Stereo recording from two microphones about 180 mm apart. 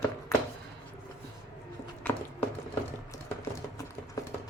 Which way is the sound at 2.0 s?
10° left (ahead or behind).